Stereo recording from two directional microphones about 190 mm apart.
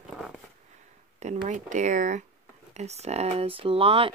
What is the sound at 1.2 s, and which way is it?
Speech, 35° right (ahead or behind).